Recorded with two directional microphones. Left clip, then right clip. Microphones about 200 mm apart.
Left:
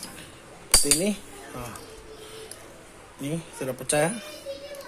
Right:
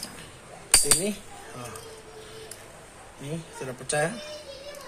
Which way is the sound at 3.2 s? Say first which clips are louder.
Left 4 dB; 30° left (ahead or behind).